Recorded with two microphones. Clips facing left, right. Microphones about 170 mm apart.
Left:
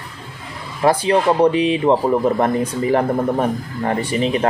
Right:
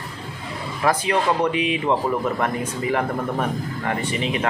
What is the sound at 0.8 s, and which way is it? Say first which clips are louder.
Speech: left 5 dB; 30° left (ahead or behind).